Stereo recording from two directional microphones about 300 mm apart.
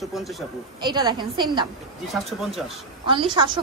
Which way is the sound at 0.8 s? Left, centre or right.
Centre.